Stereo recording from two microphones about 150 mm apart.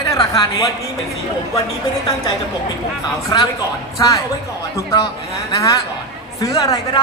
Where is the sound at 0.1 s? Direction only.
25° left (ahead or behind).